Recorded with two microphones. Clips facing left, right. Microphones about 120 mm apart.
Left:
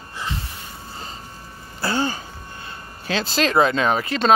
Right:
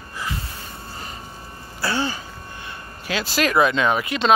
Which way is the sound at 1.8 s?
45° left (ahead or behind).